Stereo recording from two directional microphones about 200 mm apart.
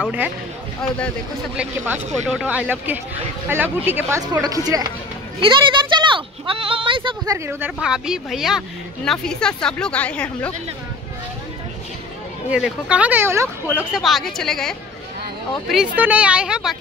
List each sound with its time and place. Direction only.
0.0 s speech: 5° right (ahead or behind)
2.2 s speech: 5° right (ahead or behind); by 7.3 s 25° right (ahead or behind)
7.3 s speech: 10° right (ahead or behind); by 10.5 s 5° left (ahead or behind)
12.4 s speech: 5° right (ahead or behind)
13.7 s speech: centre (ahead or behind)